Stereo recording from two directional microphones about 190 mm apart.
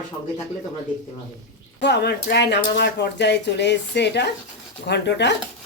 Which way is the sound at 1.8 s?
60° left (ahead or behind).